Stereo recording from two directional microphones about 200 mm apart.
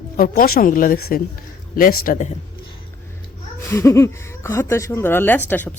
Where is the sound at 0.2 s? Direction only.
45° left (ahead or behind).